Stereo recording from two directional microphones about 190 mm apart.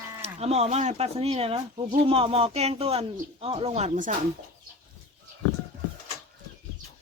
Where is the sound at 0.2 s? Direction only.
35° right (ahead or behind).